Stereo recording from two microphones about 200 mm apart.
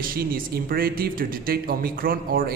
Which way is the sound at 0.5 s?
45° right (ahead or behind).